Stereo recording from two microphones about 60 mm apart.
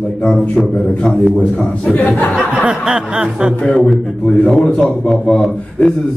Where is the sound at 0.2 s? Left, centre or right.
Centre.